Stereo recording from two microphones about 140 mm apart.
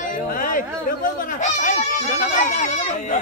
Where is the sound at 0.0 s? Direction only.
75° left (ahead or behind).